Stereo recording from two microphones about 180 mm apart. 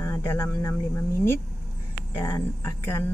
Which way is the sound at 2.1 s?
15° left (ahead or behind).